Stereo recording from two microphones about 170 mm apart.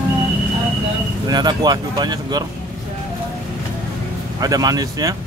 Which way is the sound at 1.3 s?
25° right (ahead or behind).